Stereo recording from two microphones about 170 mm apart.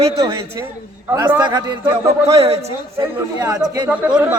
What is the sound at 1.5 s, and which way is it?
Speech, 25° right (ahead or behind).